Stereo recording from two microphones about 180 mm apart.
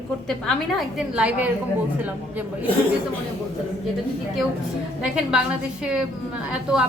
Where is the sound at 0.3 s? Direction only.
Centre (ahead or behind).